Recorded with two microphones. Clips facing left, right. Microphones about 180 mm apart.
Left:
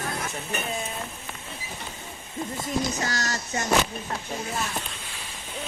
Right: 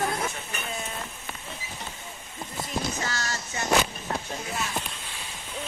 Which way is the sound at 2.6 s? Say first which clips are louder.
Left 2 dB; 40° left (ahead or behind).